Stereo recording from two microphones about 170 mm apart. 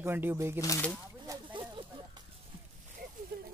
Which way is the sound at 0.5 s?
20° left (ahead or behind).